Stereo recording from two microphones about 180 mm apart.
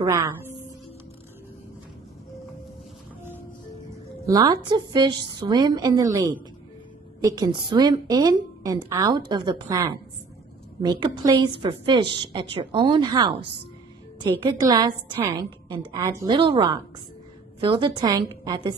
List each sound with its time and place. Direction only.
0.0 s a woman's voice: 15° right (ahead or behind)
4.3 s a woman's voice: 25° right (ahead or behind)